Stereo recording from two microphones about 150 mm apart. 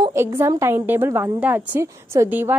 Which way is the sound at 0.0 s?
20° right (ahead or behind).